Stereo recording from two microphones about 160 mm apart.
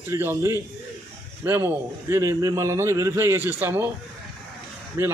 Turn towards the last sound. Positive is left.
turn(degrees=-15)  # may be behind; listen again after turning